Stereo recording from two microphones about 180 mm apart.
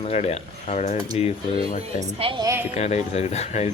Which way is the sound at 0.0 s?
35° left (ahead or behind).